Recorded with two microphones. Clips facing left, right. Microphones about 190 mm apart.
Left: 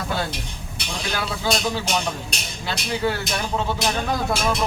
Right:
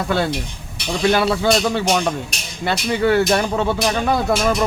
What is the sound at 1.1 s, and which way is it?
Speech, 65° right (ahead or behind).